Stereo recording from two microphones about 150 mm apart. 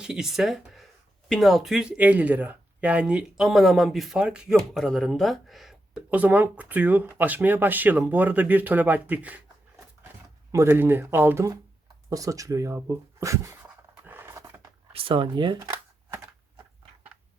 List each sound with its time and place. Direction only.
0.0 s speech: 5° right (ahead or behind)
10.5 s speech: 15° right (ahead or behind)
14.1 s pant: 15° right (ahead or behind)
14.9 s speech: 35° right (ahead or behind)
15.7 s a sound: 15° right (ahead or behind)